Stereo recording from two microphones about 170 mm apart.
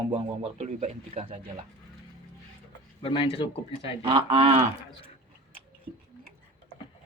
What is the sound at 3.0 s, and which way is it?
Speech, 30° left (ahead or behind).